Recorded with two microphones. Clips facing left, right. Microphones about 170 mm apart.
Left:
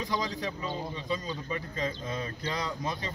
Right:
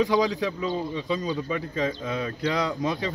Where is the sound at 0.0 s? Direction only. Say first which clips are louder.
Right 10 dB; 85° right.